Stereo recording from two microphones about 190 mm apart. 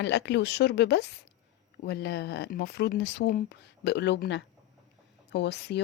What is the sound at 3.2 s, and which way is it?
Speech, 45° left (ahead or behind).